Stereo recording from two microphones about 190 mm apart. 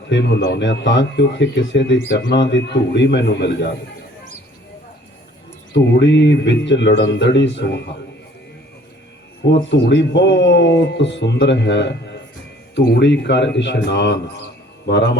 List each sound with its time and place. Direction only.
0.1 s speech: 65° left (ahead or behind)
5.7 s speech: 70° left (ahead or behind)
9.6 s speech: 65° left (ahead or behind)